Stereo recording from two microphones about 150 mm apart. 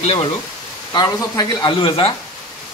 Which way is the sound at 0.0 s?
40° left (ahead or behind).